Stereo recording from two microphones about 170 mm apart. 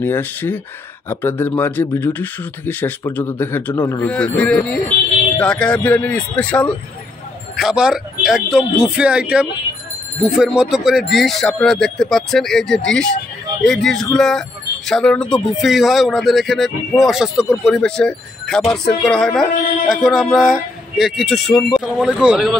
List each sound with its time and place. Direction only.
0.0 s speech: 10° left (ahead or behind)
7.5 s speech: 5° right (ahead or behind)